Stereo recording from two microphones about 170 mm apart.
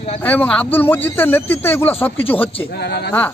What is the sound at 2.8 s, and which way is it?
Speech, 75° left (ahead or behind).